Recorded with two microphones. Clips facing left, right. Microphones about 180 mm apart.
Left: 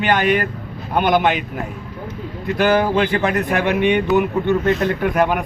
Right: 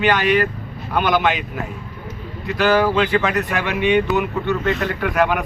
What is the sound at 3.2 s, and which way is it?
Speech, 55° left (ahead or behind).